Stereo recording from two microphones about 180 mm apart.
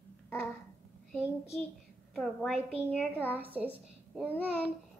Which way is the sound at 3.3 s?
10° right (ahead or behind).